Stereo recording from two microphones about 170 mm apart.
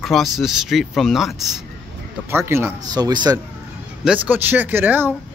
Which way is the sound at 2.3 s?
15° right (ahead or behind).